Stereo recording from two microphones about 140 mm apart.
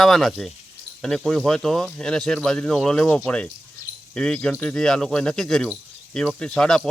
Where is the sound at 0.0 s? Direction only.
Centre (ahead or behind).